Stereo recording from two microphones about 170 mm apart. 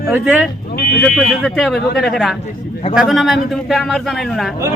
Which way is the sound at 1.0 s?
Centre (ahead or behind).